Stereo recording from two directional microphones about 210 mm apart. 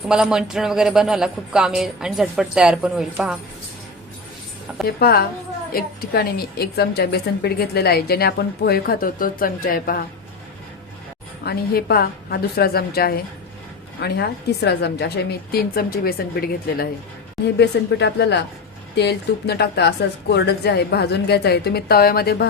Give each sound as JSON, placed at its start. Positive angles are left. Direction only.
{"t": 0.0, "sound": "speech", "side_deg": -5}
{"t": 4.9, "sound": "a woman's voice", "side_deg": 45}
{"t": 11.4, "sound": "a woman's voice", "side_deg": 45}